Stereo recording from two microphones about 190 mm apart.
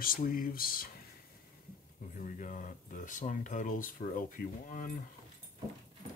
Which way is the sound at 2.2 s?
40° left (ahead or behind).